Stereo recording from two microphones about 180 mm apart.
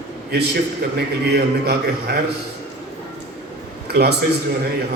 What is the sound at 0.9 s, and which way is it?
A man's voice, 65° right (ahead or behind).